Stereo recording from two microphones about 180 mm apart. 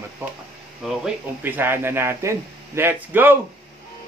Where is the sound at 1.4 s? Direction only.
10° right (ahead or behind).